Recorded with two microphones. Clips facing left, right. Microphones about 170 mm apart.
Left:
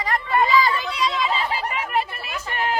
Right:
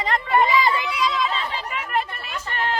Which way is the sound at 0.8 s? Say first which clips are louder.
Even; centre (ahead or behind).